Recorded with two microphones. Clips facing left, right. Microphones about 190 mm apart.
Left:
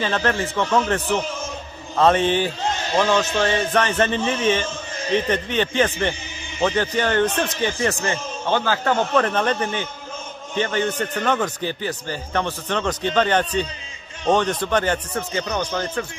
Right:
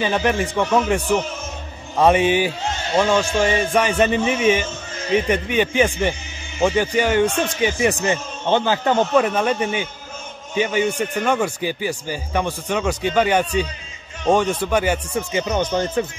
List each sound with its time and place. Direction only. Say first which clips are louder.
0.0 s a man's voice: right 2 dB; 15° right (ahead or behind)
15.4 s speech: right 4 dB; 25° right (ahead or behind)